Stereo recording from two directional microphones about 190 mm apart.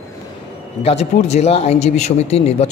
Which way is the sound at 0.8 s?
35° left (ahead or behind).